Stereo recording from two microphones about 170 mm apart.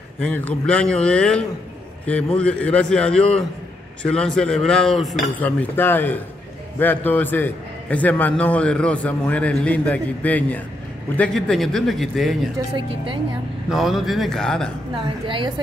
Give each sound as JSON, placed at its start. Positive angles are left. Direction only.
{"t": 0.2, "sound": "cutlery", "side_deg": 5}
{"t": 6.8, "sound": "a man's voice", "side_deg": 10}
{"t": 11.1, "sound": "cutlery", "side_deg": 5}
{"t": 12.5, "sound": "a woman's voice", "side_deg": -30}
{"t": 13.7, "sound": "cutlery", "side_deg": 0}
{"t": 15.0, "sound": "a woman's voice", "side_deg": -30}